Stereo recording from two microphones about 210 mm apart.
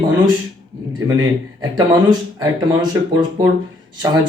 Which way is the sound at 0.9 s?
20° right (ahead or behind).